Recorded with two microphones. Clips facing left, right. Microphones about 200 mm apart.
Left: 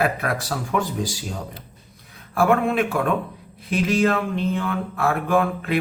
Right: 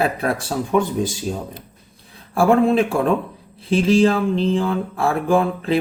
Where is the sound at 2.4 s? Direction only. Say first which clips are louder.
Right 4 dB; 30° right (ahead or behind).